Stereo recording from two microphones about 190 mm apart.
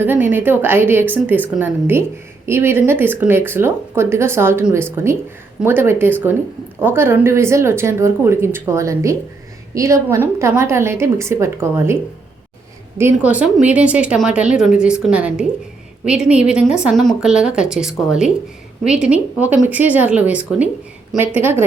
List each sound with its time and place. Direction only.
0.0 s a woman's voice: 10° right (ahead or behind)
13.0 s a woman's voice: 10° right (ahead or behind)